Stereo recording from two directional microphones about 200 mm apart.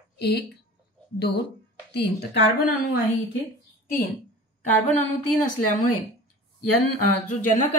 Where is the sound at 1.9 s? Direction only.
55° left (ahead or behind).